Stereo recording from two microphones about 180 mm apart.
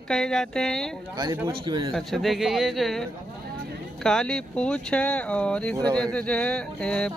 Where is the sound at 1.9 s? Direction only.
Centre (ahead or behind).